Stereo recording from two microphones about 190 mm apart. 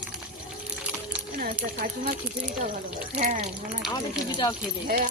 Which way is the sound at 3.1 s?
40° right (ahead or behind).